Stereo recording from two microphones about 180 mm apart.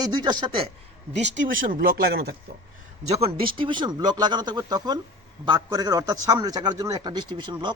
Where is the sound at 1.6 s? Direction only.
50° right (ahead or behind).